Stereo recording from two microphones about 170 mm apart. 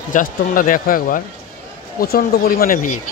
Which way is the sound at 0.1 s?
50° left (ahead or behind).